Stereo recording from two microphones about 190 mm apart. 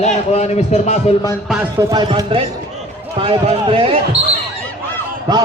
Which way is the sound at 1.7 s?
20° right (ahead or behind).